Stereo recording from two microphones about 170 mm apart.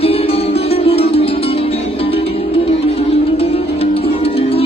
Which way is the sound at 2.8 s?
35° left (ahead or behind).